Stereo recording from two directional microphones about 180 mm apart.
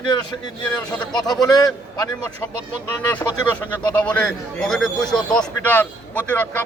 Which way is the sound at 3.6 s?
5° left (ahead or behind).